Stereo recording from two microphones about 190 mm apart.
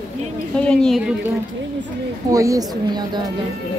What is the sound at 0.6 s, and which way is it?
Speech, 5° left (ahead or behind).